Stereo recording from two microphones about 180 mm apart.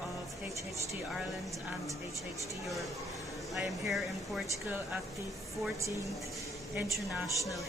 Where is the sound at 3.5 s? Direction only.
Centre (ahead or behind).